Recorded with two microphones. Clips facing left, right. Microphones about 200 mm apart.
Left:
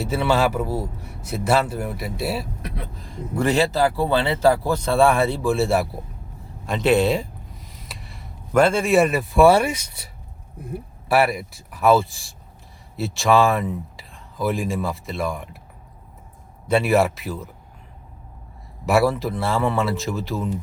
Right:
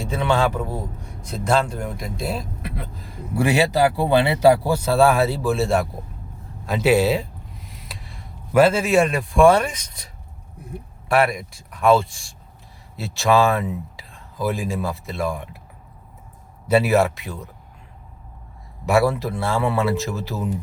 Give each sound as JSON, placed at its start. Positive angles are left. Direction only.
{"t": 0.0, "sound": "a man's voice", "side_deg": 5}
{"t": 16.6, "sound": "a man's voice", "side_deg": -5}
{"t": 18.9, "sound": "a man's voice", "side_deg": 0}